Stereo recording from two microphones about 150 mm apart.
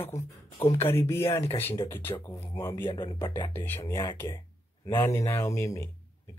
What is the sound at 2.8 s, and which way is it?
Speech, 30° left (ahead or behind).